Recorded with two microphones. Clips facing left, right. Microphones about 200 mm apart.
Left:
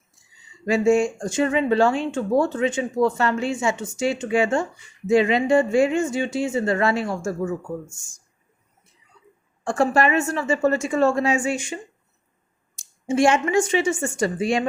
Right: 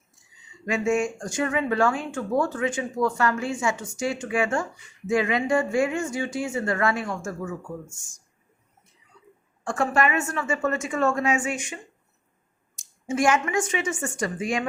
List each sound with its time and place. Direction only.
0.6 s speech: 30° left (ahead or behind)
9.6 s a woman's voice: 35° left (ahead or behind)